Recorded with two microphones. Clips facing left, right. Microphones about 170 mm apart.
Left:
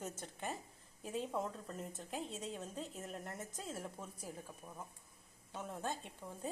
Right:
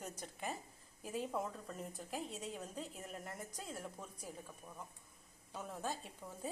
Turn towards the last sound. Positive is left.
turn(degrees=-5)  # may be behind; listen again after turning